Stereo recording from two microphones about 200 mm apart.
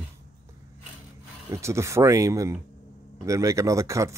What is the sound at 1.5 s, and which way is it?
Speech, 15° right (ahead or behind).